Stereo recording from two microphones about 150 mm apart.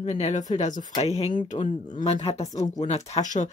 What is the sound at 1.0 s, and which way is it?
Speech, 45° left (ahead or behind).